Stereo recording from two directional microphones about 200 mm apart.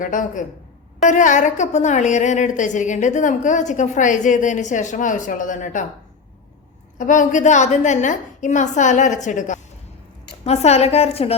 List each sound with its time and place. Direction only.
0.0 s a woman's voice: 40° left (ahead or behind)
7.0 s a woman's voice: 40° left (ahead or behind)